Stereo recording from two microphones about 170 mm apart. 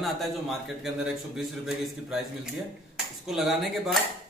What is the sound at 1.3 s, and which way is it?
A man's voice, centre (ahead or behind).